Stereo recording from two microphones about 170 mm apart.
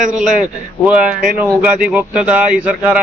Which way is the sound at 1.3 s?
10° right (ahead or behind).